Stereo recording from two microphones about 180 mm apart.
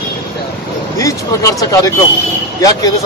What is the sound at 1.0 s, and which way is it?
Speech, 20° left (ahead or behind).